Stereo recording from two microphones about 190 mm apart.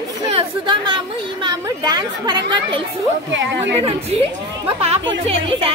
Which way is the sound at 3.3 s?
75° right (ahead or behind).